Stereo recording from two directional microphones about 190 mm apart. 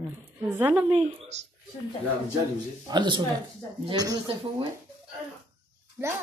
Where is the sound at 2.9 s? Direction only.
25° right (ahead or behind).